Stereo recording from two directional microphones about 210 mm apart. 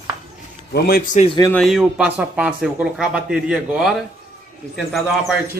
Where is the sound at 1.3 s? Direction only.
20° left (ahead or behind).